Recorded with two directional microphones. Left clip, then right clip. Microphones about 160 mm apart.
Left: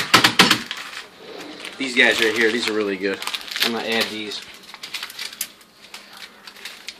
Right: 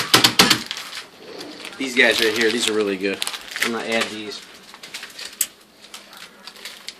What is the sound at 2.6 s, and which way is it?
Speech, 30° right (ahead or behind).